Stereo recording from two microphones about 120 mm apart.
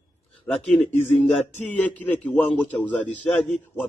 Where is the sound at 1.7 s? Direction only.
15° left (ahead or behind).